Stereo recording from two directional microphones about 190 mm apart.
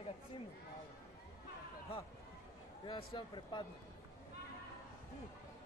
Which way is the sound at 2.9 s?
25° left (ahead or behind).